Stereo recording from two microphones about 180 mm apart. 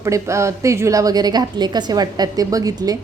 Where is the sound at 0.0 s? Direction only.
15° right (ahead or behind).